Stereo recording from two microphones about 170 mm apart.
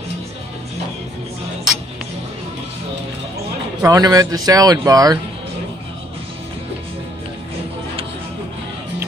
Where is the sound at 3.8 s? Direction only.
20° right (ahead or behind).